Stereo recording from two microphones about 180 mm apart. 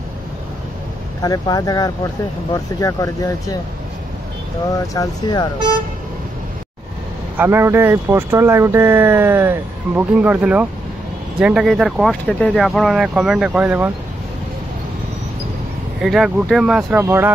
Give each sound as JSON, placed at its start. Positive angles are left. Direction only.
{"t": 1.2, "sound": "speech", "side_deg": 20}
{"t": 4.7, "sound": "speech", "side_deg": 20}
{"t": 7.3, "sound": "speech", "side_deg": -15}
{"t": 16.0, "sound": "speech", "side_deg": -5}
{"t": 17.0, "sound": "speech", "side_deg": -15}